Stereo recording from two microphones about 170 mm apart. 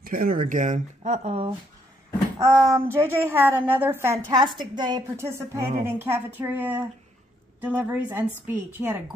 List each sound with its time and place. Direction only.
0.0 s speech: 55° right (ahead or behind); by 1.5 s 35° right (ahead or behind)
2.3 s a woman's voice: 20° right (ahead or behind)
4.6 s a woman's voice: 25° right (ahead or behind)